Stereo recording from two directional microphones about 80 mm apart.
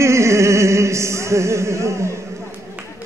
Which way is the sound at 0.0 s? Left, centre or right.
Right.